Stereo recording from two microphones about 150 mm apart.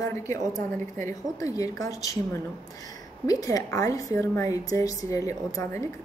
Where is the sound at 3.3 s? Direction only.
25° left (ahead or behind).